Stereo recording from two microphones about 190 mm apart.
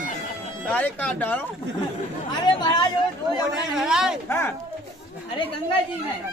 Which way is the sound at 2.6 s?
20° left (ahead or behind).